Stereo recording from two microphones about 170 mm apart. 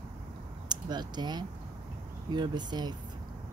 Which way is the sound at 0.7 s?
25° right (ahead or behind).